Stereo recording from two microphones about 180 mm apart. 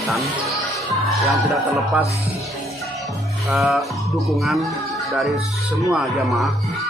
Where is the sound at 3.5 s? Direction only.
Centre (ahead or behind).